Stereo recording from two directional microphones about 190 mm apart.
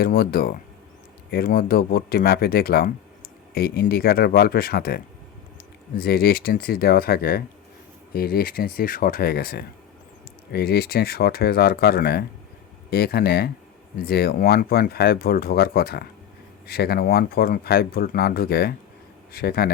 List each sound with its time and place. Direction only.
0.0 s speech: 50° left (ahead or behind)